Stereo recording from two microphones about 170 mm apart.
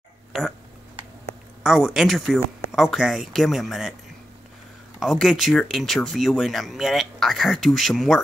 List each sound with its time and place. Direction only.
0.3 s speech: centre (ahead or behind)
1.6 s speech: centre (ahead or behind)
5.0 s speech: centre (ahead or behind)